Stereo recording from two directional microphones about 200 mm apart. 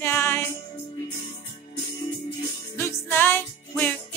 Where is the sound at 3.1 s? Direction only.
10° left (ahead or behind).